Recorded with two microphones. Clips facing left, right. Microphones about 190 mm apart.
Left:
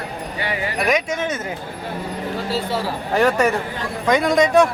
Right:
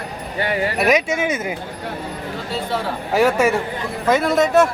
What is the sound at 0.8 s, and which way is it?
Speech, 5° right (ahead or behind).